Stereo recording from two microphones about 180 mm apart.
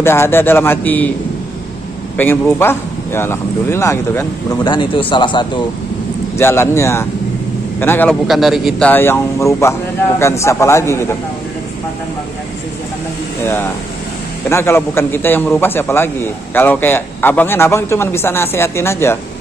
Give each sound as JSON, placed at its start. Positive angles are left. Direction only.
{"t": 0.0, "sound": "a man's voice", "side_deg": 15}
{"t": 2.1, "sound": "a man's voice", "side_deg": 10}
{"t": 4.6, "sound": "speech", "side_deg": 25}
{"t": 6.3, "sound": "a man's voice", "side_deg": 15}
{"t": 8.3, "sound": "a man's voice", "side_deg": 0}
{"t": 13.4, "sound": "a man's voice", "side_deg": 10}